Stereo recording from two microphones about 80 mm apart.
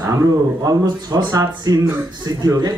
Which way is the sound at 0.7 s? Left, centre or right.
Right.